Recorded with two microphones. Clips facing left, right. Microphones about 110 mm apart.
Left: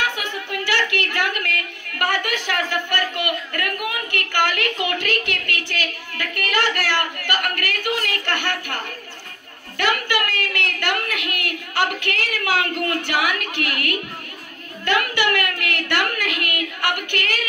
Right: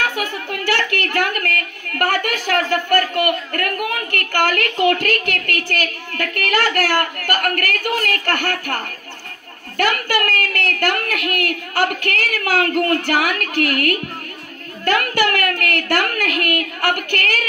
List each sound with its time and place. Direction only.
0.2 s a woman's voice: 45° right (ahead or behind)